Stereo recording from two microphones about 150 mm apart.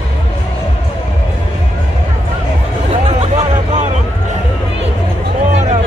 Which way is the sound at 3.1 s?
40° right (ahead or behind).